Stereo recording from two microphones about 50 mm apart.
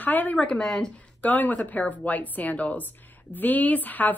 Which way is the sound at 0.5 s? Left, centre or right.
Centre.